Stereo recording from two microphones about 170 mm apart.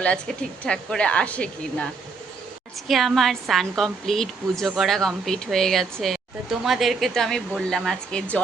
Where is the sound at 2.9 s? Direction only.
Centre (ahead or behind).